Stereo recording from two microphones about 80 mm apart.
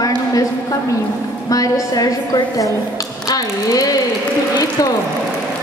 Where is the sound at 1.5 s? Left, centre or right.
Left.